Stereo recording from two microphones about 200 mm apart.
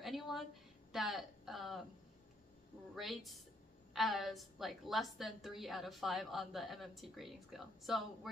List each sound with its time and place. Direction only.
0.0 s a sound: centre (ahead or behind)
0.9 s a woman's voice: centre (ahead or behind)
2.9 s a woman's voice: centre (ahead or behind)